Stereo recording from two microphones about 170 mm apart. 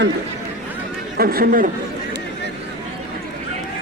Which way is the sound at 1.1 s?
60° right (ahead or behind).